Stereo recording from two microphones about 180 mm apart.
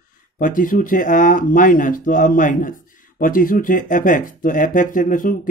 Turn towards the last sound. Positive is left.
turn(degrees=50)  # may be behind; listen again after turning